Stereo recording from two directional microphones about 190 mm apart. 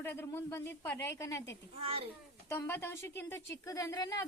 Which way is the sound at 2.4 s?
15° left (ahead or behind).